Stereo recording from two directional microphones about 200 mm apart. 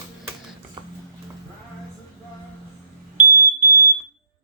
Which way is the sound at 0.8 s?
25° right (ahead or behind).